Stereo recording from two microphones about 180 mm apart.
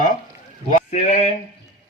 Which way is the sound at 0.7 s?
40° left (ahead or behind).